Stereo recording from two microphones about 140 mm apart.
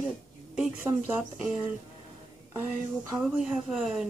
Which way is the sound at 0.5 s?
10° right (ahead or behind).